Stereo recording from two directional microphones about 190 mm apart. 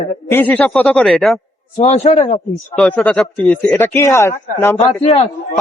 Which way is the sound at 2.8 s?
5° left (ahead or behind).